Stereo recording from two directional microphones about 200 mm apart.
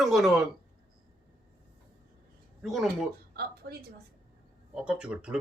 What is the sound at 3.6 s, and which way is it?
Speech, 45° right (ahead or behind).